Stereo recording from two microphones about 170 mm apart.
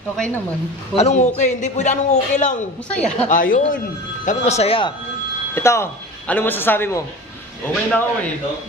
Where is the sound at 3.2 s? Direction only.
50° left (ahead or behind).